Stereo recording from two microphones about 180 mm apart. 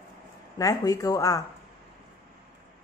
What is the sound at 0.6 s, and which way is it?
Speech, 20° left (ahead or behind).